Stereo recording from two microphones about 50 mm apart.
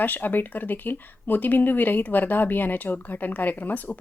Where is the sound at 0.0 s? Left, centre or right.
Left.